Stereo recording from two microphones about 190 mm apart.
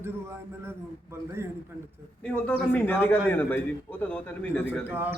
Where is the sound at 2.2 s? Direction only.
5° left (ahead or behind).